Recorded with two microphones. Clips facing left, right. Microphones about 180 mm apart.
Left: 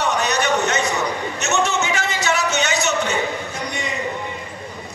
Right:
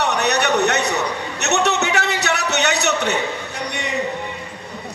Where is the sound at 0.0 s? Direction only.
65° right (ahead or behind).